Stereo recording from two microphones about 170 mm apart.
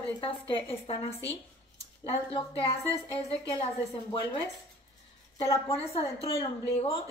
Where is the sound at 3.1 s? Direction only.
30° left (ahead or behind).